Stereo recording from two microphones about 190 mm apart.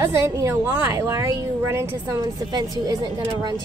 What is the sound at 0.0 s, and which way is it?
A woman's voice, 15° right (ahead or behind).